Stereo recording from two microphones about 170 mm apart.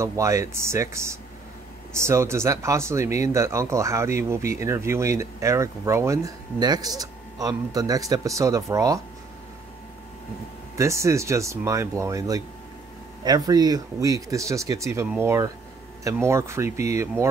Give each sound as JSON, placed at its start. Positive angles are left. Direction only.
{"t": 0.0, "sound": "speech", "side_deg": -20}
{"t": 10.8, "sound": "speech", "side_deg": -15}